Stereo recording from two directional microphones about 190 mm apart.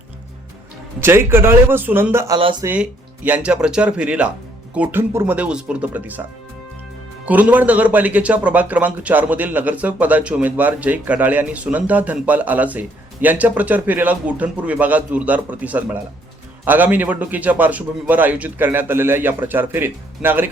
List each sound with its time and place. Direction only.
1.0 s speech: 10° right (ahead or behind)
3.2 s speech: 5° right (ahead or behind)
7.3 s speech: 10° right (ahead or behind)